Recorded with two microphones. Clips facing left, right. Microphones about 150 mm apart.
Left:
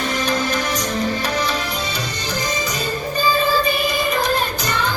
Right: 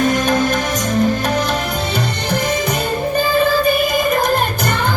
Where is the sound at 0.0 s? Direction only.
50° right (ahead or behind).